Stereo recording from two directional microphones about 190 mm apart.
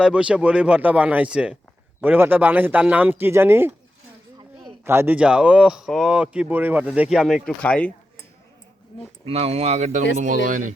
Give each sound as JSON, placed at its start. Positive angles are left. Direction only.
{"t": 0.0, "sound": "a man's voice", "side_deg": -5}
{"t": 4.9, "sound": "speech", "side_deg": -10}
{"t": 9.2, "sound": "speech", "side_deg": -35}